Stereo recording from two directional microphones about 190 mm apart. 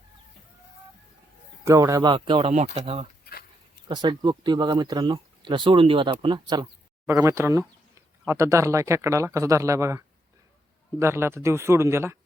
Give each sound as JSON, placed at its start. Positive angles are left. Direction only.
{"t": 1.6, "sound": "speech", "side_deg": -15}
{"t": 11.0, "sound": "speech", "side_deg": -15}